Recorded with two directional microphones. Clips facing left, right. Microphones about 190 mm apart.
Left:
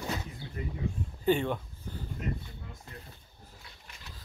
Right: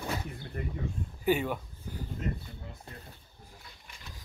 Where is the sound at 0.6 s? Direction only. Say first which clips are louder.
Right 1 dB; 55° right (ahead or behind).